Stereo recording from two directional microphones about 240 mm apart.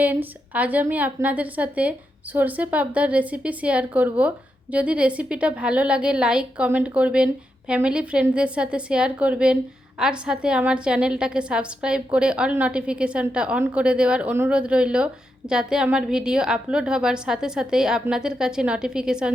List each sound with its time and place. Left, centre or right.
0.0 s a woman's voice: centre